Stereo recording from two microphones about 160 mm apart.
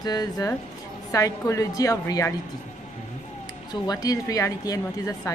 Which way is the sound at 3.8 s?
20° left (ahead or behind).